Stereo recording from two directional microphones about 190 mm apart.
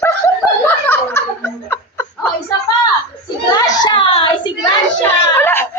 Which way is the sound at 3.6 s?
25° left (ahead or behind).